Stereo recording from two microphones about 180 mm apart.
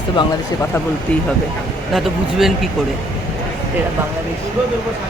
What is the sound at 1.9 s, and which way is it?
Speech, centre (ahead or behind).